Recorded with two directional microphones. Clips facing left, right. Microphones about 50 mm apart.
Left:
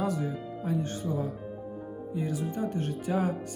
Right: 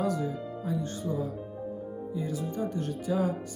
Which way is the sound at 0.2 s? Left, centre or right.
Left.